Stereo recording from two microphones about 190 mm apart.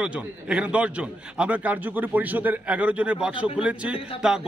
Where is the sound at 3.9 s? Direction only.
30° left (ahead or behind).